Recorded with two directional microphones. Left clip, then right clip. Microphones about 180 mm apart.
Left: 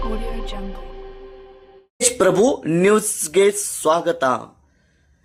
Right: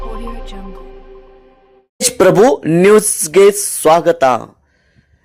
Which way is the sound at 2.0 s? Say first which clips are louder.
Right 7 dB; 35° right (ahead or behind).